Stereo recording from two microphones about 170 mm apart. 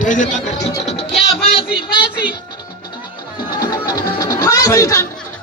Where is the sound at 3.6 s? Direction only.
20° left (ahead or behind).